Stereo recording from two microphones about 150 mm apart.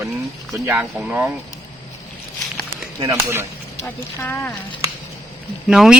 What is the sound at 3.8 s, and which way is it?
Speech, 15° left (ahead or behind).